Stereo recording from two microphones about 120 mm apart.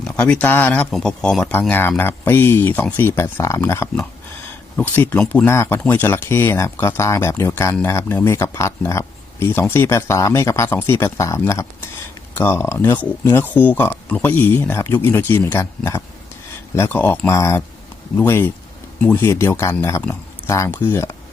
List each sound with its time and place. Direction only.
0.2 s speech: 10° left (ahead or behind)
0.9 s speech: 5° left (ahead or behind)
1.5 s speech: 15° left (ahead or behind)